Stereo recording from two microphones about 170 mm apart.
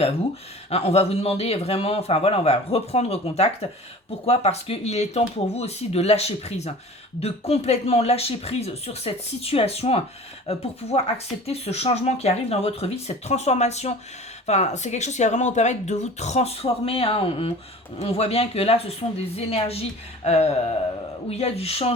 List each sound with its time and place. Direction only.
0.7 s speech: 35° left (ahead or behind)